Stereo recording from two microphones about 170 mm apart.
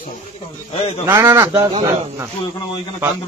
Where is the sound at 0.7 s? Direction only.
35° left (ahead or behind).